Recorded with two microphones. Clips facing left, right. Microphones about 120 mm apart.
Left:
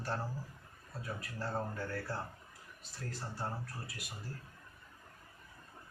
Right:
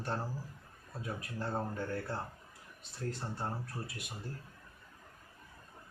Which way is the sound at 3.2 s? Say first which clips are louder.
Right 2 dB; 25° right (ahead or behind).